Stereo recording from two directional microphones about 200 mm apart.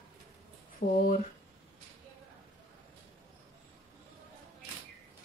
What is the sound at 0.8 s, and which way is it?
Speech, 45° left (ahead or behind).